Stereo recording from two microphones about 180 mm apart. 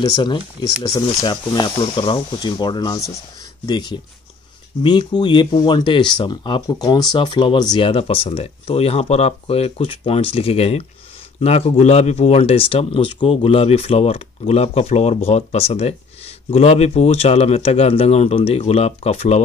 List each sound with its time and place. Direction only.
0.0 s speech: 25° left (ahead or behind)